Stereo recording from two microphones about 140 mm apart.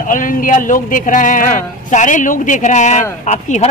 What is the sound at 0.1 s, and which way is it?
A man's voice, 75° left (ahead or behind).